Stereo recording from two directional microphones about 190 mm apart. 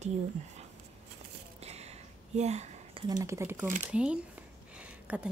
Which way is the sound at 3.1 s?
15° right (ahead or behind).